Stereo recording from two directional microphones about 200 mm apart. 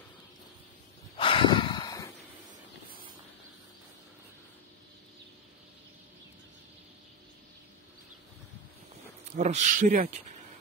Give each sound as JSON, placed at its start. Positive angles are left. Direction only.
{"t": 1.1, "sound": "snort", "side_deg": 25}
{"t": 9.4, "sound": "speech", "side_deg": -35}